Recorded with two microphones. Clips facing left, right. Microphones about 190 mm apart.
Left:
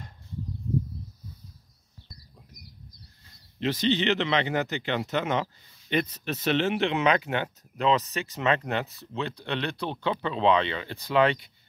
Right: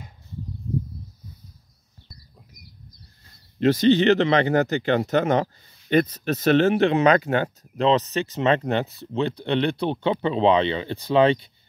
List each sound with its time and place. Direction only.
3.5 s speech: 45° right (ahead or behind); by 11.5 s 25° right (ahead or behind)